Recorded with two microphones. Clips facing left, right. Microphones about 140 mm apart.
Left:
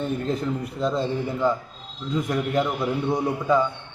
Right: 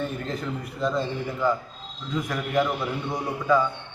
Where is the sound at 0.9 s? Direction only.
20° left (ahead or behind).